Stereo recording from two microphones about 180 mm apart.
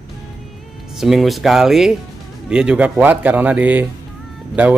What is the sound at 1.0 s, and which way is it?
Speech, centre (ahead or behind).